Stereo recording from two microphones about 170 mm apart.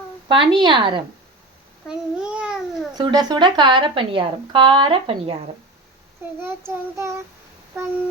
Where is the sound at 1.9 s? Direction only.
5° right (ahead or behind).